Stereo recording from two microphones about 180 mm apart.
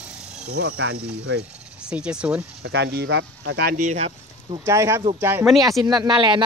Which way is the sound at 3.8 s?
40° right (ahead or behind).